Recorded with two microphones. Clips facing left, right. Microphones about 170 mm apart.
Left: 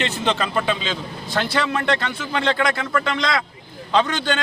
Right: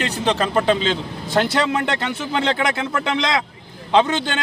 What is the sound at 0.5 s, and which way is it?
Speech, 40° right (ahead or behind).